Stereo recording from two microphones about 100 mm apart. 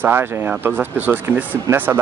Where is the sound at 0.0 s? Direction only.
20° right (ahead or behind).